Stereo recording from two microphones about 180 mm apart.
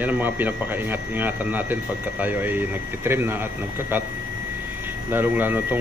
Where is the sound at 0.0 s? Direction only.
10° right (ahead or behind).